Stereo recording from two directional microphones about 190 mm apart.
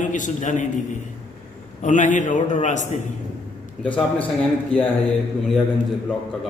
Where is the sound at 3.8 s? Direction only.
5° left (ahead or behind).